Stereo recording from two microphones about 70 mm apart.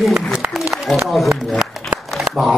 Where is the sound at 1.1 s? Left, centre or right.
Centre.